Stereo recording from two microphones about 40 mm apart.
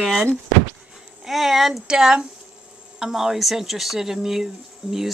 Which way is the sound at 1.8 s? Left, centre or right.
Centre.